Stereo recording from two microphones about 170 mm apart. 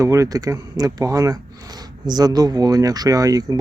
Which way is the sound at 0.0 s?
20° right (ahead or behind).